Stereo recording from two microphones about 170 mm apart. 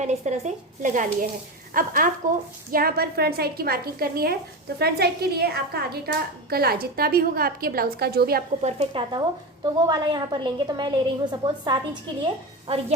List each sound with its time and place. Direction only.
0.0 s a woman's voice: 45° right (ahead or behind); by 8.4 s 65° right (ahead or behind)
8.6 s a woman's voice: 35° right (ahead or behind)